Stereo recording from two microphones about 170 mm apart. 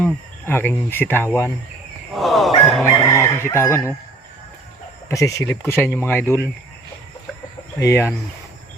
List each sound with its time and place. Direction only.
0.0 s speech: 10° left (ahead or behind)
2.1 s a sound: centre (ahead or behind)
2.8 s chicken: 20° left (ahead or behind)
5.0 s speech: 20° left (ahead or behind)
7.8 s speech: 15° left (ahead or behind)